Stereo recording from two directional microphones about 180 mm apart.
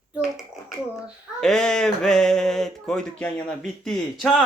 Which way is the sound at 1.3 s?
5° left (ahead or behind).